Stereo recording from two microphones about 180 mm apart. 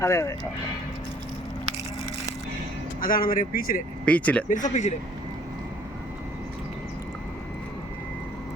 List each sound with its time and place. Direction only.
0.0 s speech: 15° left (ahead or behind)
3.0 s speech: 50° left (ahead or behind)
4.0 s speech: 5° left (ahead or behind)
4.4 s speech: 45° left (ahead or behind)